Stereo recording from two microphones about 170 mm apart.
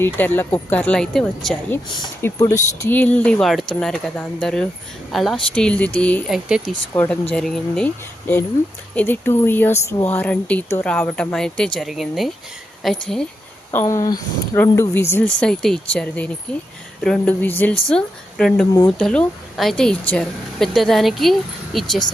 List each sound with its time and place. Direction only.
0.0 s a woman's voice: 10° left (ahead or behind)
2.2 s a woman's voice: 15° left (ahead or behind); by 6.7 s centre (ahead or behind)
6.9 s a woman's voice: 10° left (ahead or behind)
9.0 s a woman's voice: 10° left (ahead or behind)
13.7 s a woman's voice: 20° left (ahead or behind); by 22.0 s centre (ahead or behind)